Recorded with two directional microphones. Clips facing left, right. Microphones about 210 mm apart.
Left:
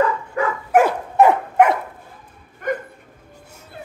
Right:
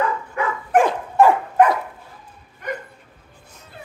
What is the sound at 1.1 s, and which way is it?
Dog, 20° left (ahead or behind).